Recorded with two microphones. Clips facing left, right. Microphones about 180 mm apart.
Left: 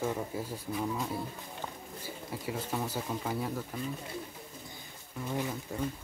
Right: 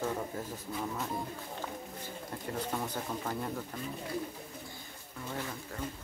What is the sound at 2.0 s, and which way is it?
Speech, 5° left (ahead or behind).